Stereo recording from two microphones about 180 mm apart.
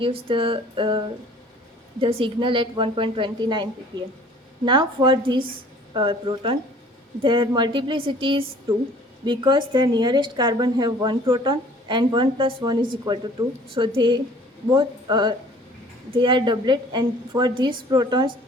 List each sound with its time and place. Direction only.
0.0 s a woman's voice: 30° right (ahead or behind)